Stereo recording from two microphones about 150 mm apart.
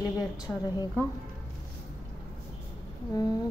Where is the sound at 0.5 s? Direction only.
10° left (ahead or behind).